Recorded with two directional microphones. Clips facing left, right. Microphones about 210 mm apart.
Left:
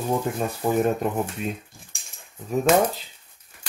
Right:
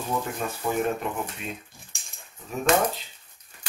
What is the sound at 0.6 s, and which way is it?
Speech, 40° left (ahead or behind).